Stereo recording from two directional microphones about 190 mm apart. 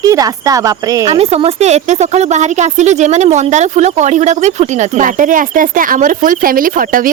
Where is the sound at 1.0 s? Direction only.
30° right (ahead or behind).